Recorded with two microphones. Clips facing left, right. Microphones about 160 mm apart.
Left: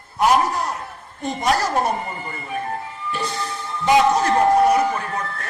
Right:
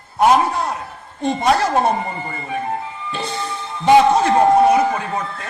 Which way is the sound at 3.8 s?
30° right (ahead or behind).